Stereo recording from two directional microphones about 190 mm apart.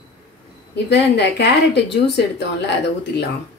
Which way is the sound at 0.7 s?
65° left (ahead or behind).